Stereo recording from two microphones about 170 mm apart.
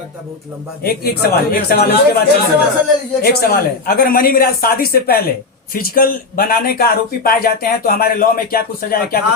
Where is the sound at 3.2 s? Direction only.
60° left (ahead or behind).